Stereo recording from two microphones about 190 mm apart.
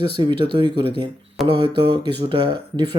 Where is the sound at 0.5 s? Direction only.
25° right (ahead or behind).